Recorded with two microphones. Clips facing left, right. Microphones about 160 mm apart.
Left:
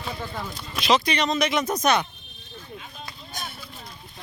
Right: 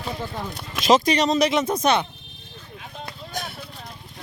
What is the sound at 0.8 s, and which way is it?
Speech, 40° right (ahead or behind).